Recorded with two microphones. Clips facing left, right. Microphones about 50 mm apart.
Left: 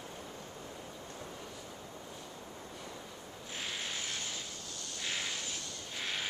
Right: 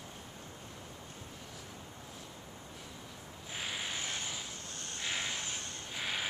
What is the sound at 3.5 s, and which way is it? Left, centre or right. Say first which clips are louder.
Vehicle: right 1 dB; centre.